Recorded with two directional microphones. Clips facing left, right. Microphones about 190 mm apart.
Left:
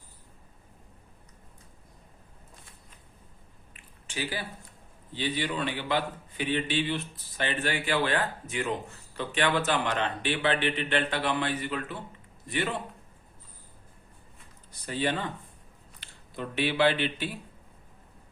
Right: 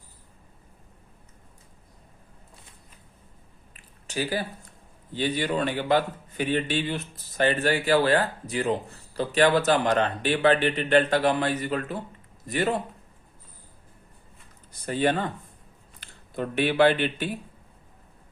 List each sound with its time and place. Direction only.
3.8 s a sound: 40° right (ahead or behind)
5.1 s a man's voice: 45° right (ahead or behind)
14.8 s speech: 50° right (ahead or behind)